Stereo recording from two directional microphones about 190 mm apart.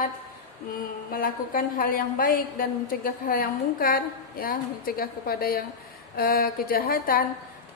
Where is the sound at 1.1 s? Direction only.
50° left (ahead or behind).